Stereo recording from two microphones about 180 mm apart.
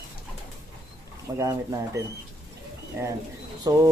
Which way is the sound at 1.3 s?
15° right (ahead or behind).